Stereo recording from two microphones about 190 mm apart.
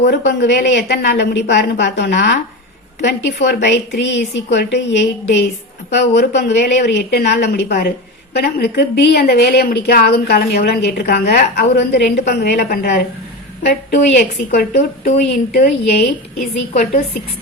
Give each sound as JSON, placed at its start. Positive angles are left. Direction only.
{"t": 0.3, "sound": "a woman's voice", "side_deg": 65}
{"t": 15.0, "sound": "a woman's voice", "side_deg": 45}